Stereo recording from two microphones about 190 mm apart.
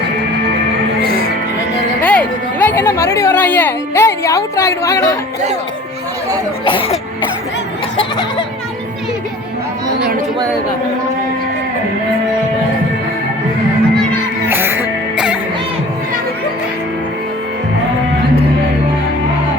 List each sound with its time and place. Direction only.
2.0 s a sound: 5° left (ahead or behind)
6.7 s cough: 30° left (ahead or behind)
14.5 s music: 10° right (ahead or behind)